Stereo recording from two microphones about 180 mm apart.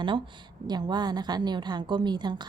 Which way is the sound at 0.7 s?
25° right (ahead or behind).